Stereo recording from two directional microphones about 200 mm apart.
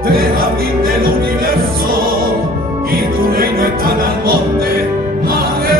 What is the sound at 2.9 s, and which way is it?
Music, 50° right (ahead or behind).